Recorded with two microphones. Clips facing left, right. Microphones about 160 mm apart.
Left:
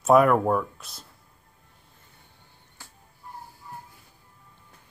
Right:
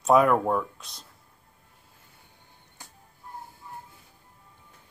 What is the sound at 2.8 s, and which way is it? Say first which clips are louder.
Music: even; 20° right (ahead or behind).